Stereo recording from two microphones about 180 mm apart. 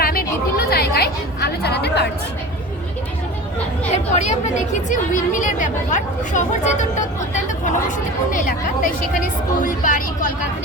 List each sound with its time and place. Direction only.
0.0 s a sound: 55° left (ahead or behind)
0.7 s chatter: 60° left (ahead or behind)
3.9 s speech: 40° left (ahead or behind)